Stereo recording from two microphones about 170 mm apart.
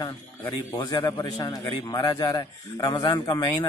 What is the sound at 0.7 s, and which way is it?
A man's voice, 20° left (ahead or behind).